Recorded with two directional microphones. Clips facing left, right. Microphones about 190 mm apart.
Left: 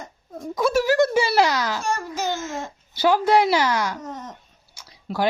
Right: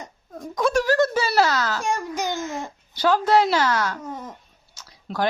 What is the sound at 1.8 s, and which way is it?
Speech, 15° right (ahead or behind).